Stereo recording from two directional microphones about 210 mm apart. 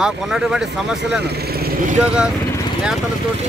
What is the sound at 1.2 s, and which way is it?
Speech, 50° right (ahead or behind).